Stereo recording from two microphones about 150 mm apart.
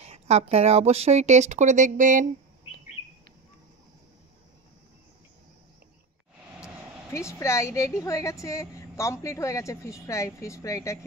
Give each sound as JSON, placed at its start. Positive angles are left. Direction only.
{"t": 0.0, "sound": "speech", "side_deg": -45}
{"t": 7.1, "sound": "a woman's voice", "side_deg": 20}